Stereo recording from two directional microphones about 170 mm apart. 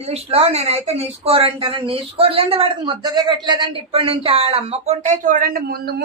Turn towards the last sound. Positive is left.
turn(degrees=-60)  # may be behind; listen again after turning